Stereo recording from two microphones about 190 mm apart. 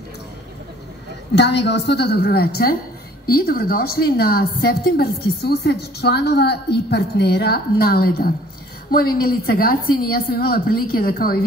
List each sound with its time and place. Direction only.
1.3 s a woman's voice: 65° left (ahead or behind)